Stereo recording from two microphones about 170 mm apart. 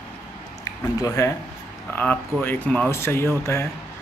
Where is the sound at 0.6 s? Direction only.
20° left (ahead or behind).